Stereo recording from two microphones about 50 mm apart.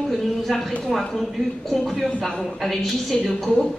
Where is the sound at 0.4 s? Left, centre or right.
Centre.